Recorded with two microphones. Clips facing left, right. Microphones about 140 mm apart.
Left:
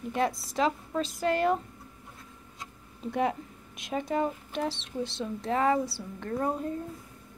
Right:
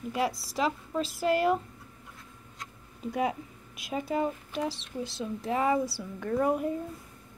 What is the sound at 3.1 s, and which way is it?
Speech, 5° right (ahead or behind).